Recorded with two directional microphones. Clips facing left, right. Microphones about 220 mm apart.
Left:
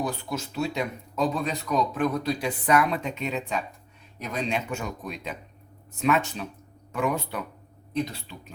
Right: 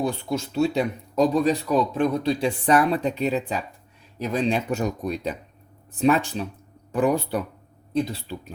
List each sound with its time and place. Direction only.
0.0 s speech: 30° right (ahead or behind)